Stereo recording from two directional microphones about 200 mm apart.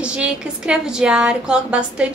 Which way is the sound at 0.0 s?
5° right (ahead or behind).